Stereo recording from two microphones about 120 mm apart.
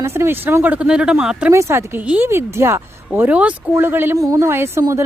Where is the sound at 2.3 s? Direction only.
20° right (ahead or behind).